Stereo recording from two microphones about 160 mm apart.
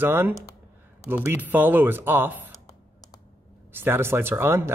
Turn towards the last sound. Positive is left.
turn(degrees=-15)  # may be behind; listen again after turning